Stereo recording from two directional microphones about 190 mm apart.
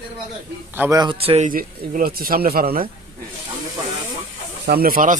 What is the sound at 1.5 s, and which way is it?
Speech, 50° right (ahead or behind).